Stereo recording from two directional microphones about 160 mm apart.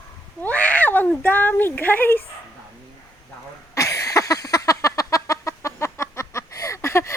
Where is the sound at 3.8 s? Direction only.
20° left (ahead or behind).